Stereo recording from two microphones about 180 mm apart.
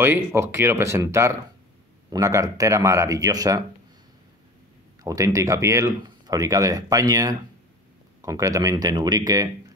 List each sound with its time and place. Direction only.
0.0 s speech: 10° right (ahead or behind)
5.0 s speech: 20° right (ahead or behind)